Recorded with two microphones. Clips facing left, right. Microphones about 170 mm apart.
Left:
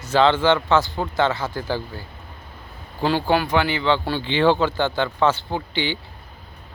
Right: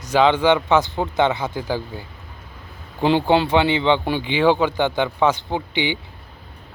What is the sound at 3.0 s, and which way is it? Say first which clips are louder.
Speech: right 3 dB; 20° right (ahead or behind).